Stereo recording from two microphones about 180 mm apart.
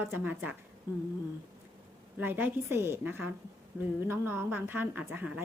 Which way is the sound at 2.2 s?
10° right (ahead or behind).